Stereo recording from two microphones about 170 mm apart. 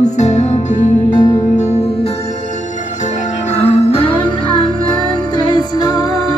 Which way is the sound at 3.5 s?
40° left (ahead or behind).